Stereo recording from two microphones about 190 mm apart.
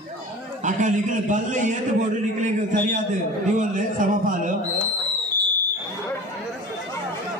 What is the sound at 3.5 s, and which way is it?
A man's voice, 45° right (ahead or behind).